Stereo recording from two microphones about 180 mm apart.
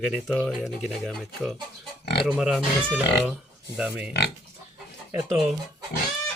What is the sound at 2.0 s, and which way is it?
Speech, 65° left (ahead or behind).